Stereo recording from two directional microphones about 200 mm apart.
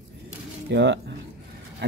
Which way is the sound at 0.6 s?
60° right (ahead or behind).